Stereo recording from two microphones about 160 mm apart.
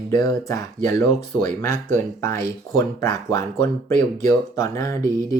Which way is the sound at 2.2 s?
20° left (ahead or behind).